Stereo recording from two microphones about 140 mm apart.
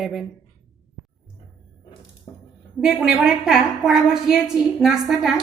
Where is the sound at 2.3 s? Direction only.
40° left (ahead or behind).